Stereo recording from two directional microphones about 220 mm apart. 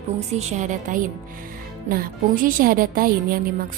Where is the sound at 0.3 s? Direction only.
35° right (ahead or behind).